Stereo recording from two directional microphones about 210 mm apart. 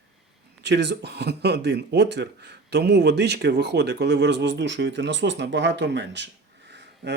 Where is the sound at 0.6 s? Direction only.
55° right (ahead or behind).